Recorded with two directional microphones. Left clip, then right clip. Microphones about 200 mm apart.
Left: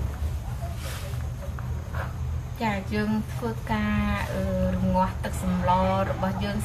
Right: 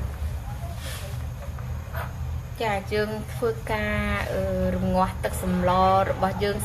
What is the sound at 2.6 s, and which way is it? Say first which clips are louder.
A woman's voice: right 3 dB; 45° right (ahead or behind).